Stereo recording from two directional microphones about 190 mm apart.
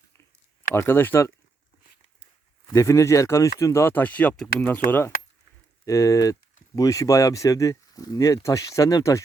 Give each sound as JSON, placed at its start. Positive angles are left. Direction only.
{"t": 0.7, "sound": "speech", "side_deg": 10}
{"t": 2.7, "sound": "speech", "side_deg": 15}